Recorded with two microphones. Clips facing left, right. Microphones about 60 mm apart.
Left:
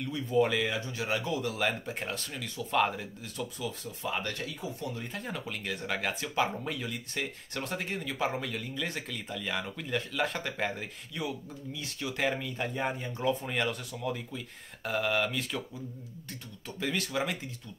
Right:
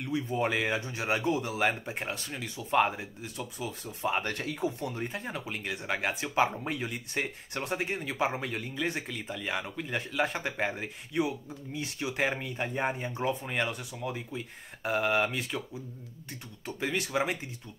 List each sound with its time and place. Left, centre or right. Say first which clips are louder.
0.0 s speech: left 2 dB; right
1.5 s speech: right 2 dB; right
3.5 s speech: even; right
4.5 s speech: right 6 dB; right
4.8 s speech: right 3 dB; right
5.2 s speech: right 1 dB; centre
16.8 s speech: right 2 dB; right